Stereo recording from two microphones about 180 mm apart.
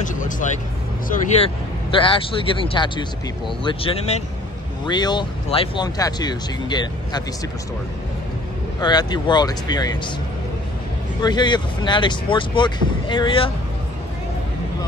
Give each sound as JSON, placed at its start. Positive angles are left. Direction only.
{"t": 0.0, "sound": "vehicle", "side_deg": 45}
{"t": 1.9, "sound": "speech", "side_deg": 30}
{"t": 8.8, "sound": "speech", "side_deg": 25}
{"t": 11.2, "sound": "speech", "side_deg": 25}